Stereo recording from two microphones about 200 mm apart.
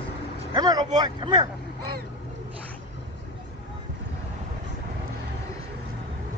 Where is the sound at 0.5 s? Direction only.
20° right (ahead or behind).